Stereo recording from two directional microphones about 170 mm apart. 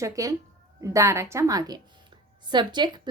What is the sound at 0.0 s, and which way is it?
A woman's voice, 20° right (ahead or behind).